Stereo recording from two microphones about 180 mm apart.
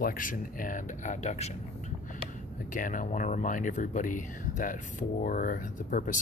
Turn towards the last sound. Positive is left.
turn(degrees=45)  # may be behind; listen again after turning